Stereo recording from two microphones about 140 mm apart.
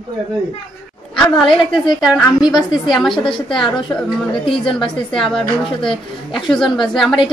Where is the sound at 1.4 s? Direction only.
Centre (ahead or behind).